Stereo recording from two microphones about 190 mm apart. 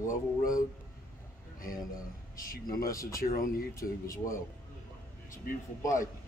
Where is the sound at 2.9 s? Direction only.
15° left (ahead or behind).